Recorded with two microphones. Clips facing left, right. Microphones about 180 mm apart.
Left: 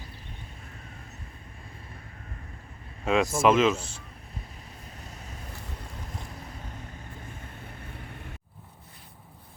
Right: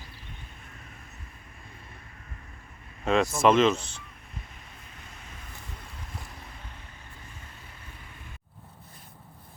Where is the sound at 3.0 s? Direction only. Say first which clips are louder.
Even; 5° left (ahead or behind).